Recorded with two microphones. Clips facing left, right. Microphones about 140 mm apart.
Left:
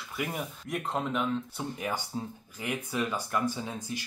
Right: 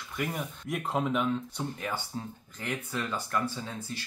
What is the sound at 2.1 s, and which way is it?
Speech, 15° left (ahead or behind).